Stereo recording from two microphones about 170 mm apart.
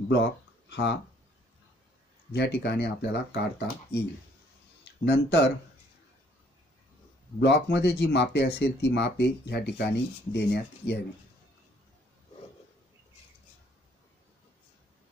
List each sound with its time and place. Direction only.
0.1 s speech: 90° left
2.3 s speech: 75° left (ahead or behind)
5.0 s speech: 80° left
7.3 s speech: 85° left